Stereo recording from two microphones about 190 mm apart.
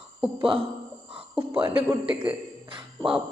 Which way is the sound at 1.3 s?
5° right (ahead or behind).